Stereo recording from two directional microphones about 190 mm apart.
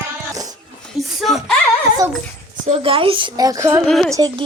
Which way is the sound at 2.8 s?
30° right (ahead or behind).